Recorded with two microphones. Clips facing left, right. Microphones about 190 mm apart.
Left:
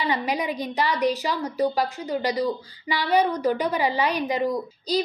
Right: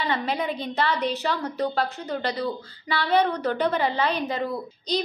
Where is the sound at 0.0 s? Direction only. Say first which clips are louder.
Left 1 dB; 10° left (ahead or behind).